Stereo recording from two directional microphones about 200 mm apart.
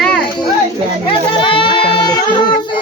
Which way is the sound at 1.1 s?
25° left (ahead or behind).